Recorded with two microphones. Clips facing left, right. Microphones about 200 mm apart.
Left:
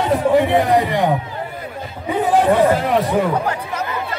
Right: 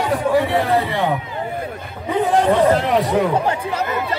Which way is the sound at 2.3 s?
5° left (ahead or behind).